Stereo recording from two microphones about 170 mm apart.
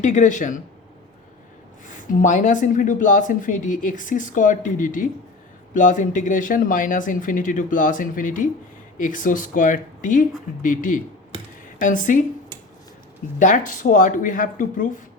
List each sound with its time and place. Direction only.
0.0 s speech: 45° left (ahead or behind)
1.9 s speech: 50° left (ahead or behind)
13.4 s speech: 50° left (ahead or behind)